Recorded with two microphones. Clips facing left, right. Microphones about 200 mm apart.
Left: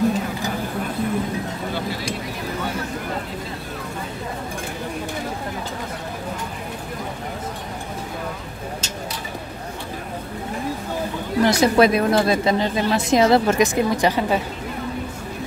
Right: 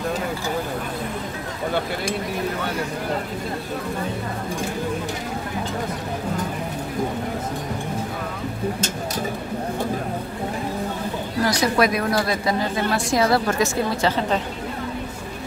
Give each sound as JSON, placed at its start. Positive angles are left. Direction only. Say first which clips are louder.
{"t": 11.4, "sound": "a woman's voice", "louder": "left 4 dB", "side_deg": 25}